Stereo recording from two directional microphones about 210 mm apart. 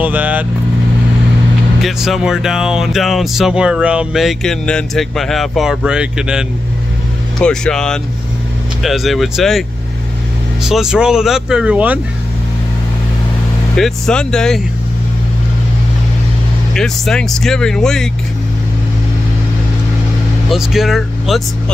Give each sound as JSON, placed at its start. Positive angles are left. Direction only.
{"t": 0.0, "sound": "speech", "side_deg": -10}
{"t": 1.8, "sound": "speech", "side_deg": 0}
{"t": 13.7, "sound": "speech", "side_deg": 0}
{"t": 16.7, "sound": "speech", "side_deg": 0}
{"t": 20.4, "sound": "speech", "side_deg": 0}